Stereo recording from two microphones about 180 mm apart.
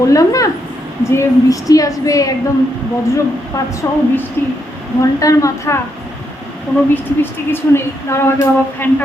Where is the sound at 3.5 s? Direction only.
15° left (ahead or behind).